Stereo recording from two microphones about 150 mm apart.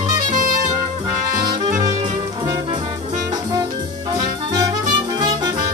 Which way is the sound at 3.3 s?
25° right (ahead or behind).